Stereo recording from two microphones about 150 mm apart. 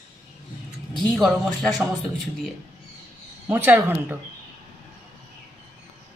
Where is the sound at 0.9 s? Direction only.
5° left (ahead or behind).